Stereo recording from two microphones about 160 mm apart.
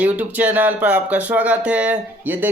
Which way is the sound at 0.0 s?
10° right (ahead or behind).